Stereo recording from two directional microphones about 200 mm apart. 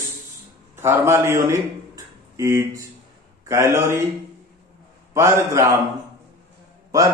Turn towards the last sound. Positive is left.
turn(degrees=-15)  # may be behind; listen again after turning